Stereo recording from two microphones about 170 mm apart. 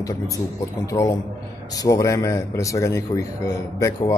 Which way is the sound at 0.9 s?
40° left (ahead or behind).